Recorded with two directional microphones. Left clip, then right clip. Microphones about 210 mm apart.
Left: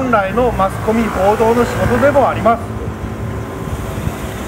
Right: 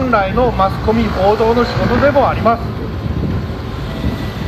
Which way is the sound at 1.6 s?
45° left (ahead or behind).